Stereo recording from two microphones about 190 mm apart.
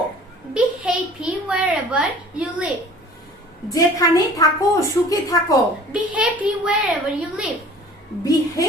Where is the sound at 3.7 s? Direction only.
20° left (ahead or behind).